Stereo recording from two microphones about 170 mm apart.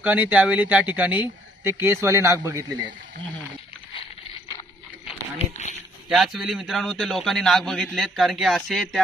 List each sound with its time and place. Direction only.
0.0 s speech: 10° right (ahead or behind)
5.0 s a sound: 40° left (ahead or behind)
6.0 s a man's voice: centre (ahead or behind)